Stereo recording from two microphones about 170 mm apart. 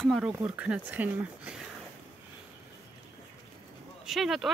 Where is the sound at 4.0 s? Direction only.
Centre (ahead or behind).